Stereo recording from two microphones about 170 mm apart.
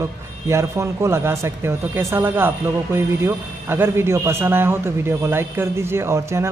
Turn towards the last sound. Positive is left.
turn(degrees=-15)  # may be behind; listen again after turning